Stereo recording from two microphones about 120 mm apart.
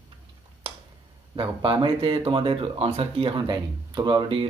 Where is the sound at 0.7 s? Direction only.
50° right (ahead or behind).